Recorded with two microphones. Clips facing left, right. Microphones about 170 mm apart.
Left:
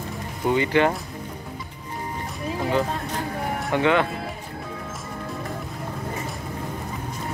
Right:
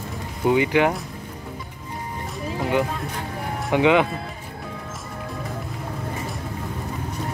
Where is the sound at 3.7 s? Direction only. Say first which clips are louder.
Right 3 dB; 15° right (ahead or behind).